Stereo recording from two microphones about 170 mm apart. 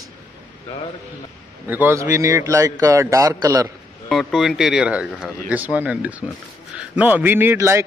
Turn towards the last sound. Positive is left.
turn(degrees=-15)  # may be behind; listen again after turning